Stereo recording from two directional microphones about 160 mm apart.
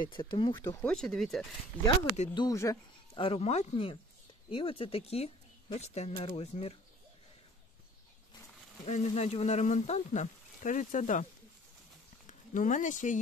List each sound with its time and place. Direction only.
0.1 s speech: 30° left (ahead or behind)
0.7 s speech: 5° left (ahead or behind)
2.3 s speech: 20° left (ahead or behind)
3.2 s speech: 35° left (ahead or behind)
8.8 s speech: 45° left (ahead or behind)
12.3 s speech: 50° left (ahead or behind)